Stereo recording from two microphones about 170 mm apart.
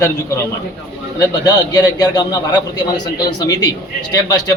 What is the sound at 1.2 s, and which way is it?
A man's voice, 25° left (ahead or behind).